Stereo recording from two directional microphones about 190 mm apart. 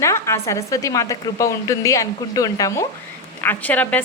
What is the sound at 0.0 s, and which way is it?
A woman's voice, 15° left (ahead or behind).